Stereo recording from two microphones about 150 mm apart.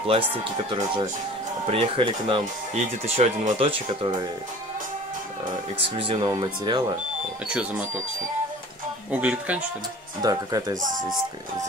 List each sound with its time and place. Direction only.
0.0 s speech: 40° right (ahead or behind)
2.7 s speech: 50° right (ahead or behind)
5.8 s speech: 35° right (ahead or behind)
7.4 s speech: 5° right (ahead or behind)
9.1 s speech: 10° right (ahead or behind)
10.2 s speech: 25° right (ahead or behind)